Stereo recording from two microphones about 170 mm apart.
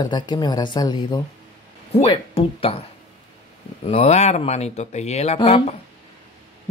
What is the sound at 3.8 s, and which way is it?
Speech, 35° left (ahead or behind).